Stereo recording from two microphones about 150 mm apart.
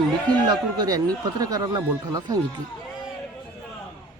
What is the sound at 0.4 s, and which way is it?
Speech, 25° right (ahead or behind).